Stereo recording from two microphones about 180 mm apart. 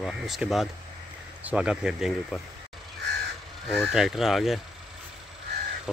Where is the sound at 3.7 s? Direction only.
Centre (ahead or behind).